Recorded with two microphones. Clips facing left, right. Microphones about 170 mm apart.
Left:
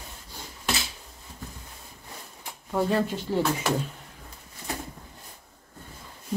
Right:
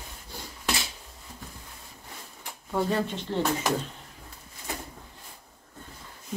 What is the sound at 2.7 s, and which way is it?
Speech, centre (ahead or behind).